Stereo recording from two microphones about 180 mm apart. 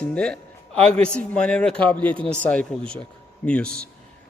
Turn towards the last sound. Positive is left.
turn(degrees=5)  # may be behind; listen again after turning